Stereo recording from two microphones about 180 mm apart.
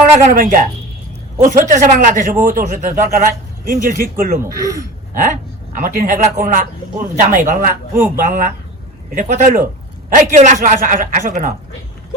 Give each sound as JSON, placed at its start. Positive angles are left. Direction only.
{"t": 0.2, "sound": "speech", "side_deg": -45}
{"t": 5.8, "sound": "speech", "side_deg": -50}
{"t": 7.9, "sound": "speech", "side_deg": -10}
{"t": 8.2, "sound": "speech", "side_deg": -50}